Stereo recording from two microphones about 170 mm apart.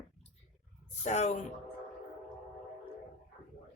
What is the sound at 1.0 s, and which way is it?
Speech, 40° left (ahead or behind).